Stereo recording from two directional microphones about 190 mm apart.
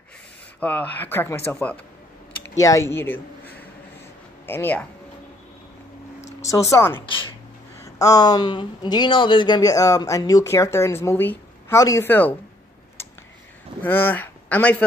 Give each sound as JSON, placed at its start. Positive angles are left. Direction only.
{"t": 0.6, "sound": "a man's voice", "side_deg": 10}
{"t": 6.4, "sound": "speech", "side_deg": 15}
{"t": 13.8, "sound": "speech", "side_deg": 10}